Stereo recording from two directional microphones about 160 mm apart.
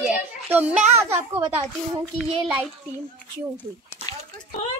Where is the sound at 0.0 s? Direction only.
10° right (ahead or behind).